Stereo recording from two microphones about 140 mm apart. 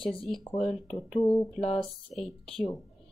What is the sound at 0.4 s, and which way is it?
Speech, 40° left (ahead or behind).